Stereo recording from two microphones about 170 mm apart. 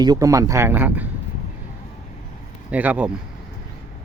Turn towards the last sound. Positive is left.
turn(degrees=-10)  # may be behind; listen again after turning